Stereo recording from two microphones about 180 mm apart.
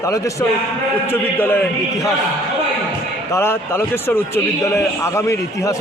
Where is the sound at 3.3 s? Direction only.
15° left (ahead or behind).